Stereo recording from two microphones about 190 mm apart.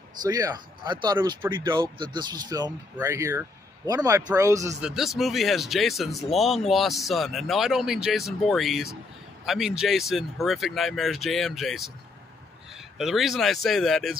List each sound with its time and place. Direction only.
0.2 s a man's voice: 20° right (ahead or behind)
4.8 s speech: centre (ahead or behind)
12.9 s speech: centre (ahead or behind)